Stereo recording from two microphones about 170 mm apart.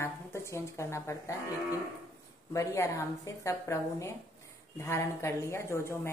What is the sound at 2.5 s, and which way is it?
Speech, 20° left (ahead or behind).